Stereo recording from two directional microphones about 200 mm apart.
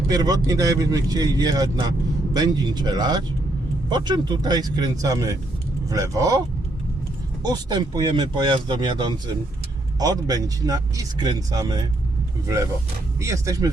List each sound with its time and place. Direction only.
0.1 s speech: 20° right (ahead or behind)
7.4 s speech: 20° right (ahead or behind)
13.1 s speech: 15° right (ahead or behind)